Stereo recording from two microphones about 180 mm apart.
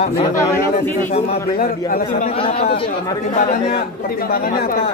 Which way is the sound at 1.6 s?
50° left (ahead or behind).